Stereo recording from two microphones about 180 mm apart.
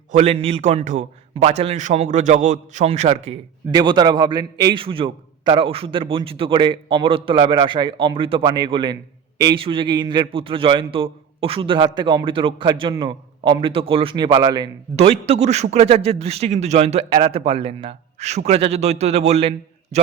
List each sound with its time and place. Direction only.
0.1 s a man's voice: 35° right (ahead or behind)
3.7 s a man's voice: 25° right (ahead or behind)
14.9 s a man's voice: 35° right (ahead or behind)